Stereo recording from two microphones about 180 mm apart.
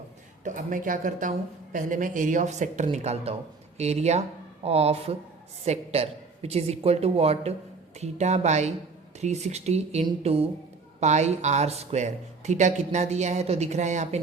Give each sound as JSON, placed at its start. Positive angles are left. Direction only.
{"t": 0.4, "sound": "speech", "side_deg": -45}